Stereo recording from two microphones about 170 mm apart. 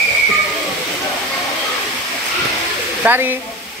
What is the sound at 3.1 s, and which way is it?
Speech, 10° right (ahead or behind).